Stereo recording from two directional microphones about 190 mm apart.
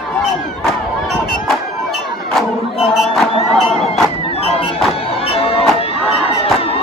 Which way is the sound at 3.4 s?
35° left (ahead or behind).